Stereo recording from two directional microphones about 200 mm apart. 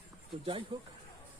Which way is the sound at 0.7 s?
25° right (ahead or behind).